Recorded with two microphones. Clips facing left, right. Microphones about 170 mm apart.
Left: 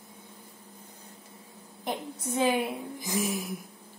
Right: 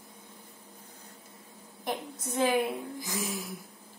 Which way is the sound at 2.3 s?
15° left (ahead or behind).